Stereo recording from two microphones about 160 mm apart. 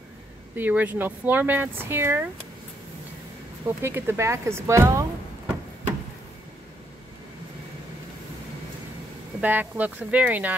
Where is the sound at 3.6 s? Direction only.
15° right (ahead or behind).